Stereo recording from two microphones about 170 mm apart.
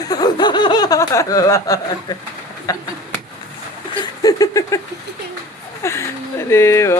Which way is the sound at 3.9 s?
20° left (ahead or behind).